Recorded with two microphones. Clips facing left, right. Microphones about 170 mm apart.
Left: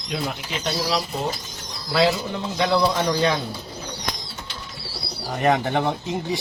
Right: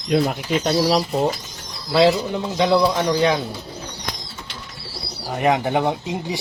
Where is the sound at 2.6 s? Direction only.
15° right (ahead or behind).